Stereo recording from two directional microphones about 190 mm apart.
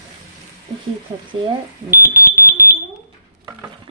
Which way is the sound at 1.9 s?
15° right (ahead or behind).